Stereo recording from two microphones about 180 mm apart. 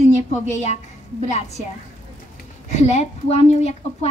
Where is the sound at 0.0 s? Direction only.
40° left (ahead or behind).